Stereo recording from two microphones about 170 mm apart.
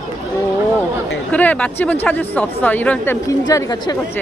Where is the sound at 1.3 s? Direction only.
10° left (ahead or behind).